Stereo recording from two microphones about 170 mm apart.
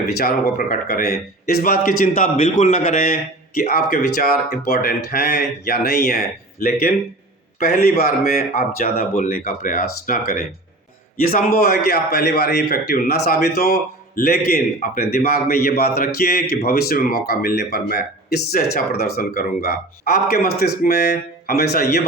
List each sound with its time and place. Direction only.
0.2 s speech: 60° left (ahead or behind)